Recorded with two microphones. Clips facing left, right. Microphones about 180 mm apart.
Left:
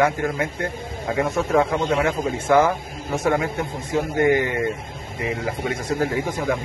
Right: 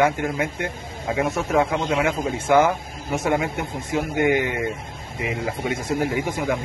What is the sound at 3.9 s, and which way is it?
Speech, 20° right (ahead or behind).